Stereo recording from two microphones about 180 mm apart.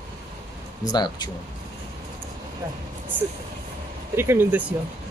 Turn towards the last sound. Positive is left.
turn(degrees=-10)  # may be behind; listen again after turning